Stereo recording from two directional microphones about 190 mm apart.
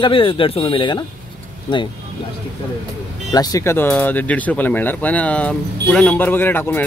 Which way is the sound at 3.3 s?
20° left (ahead or behind).